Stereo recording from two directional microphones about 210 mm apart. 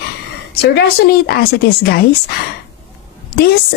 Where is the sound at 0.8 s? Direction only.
50° left (ahead or behind).